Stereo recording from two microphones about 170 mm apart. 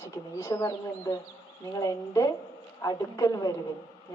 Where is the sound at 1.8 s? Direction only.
20° left (ahead or behind).